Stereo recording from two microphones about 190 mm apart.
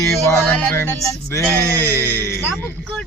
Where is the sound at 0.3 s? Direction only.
10° left (ahead or behind).